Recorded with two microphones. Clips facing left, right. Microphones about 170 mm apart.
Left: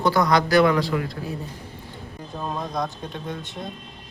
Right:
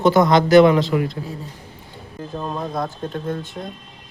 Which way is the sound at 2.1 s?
Centre (ahead or behind).